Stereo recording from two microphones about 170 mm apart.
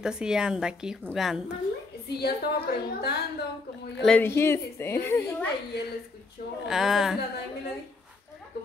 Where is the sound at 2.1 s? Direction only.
70° left (ahead or behind).